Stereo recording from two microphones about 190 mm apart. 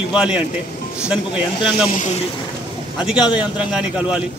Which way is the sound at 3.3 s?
5° right (ahead or behind).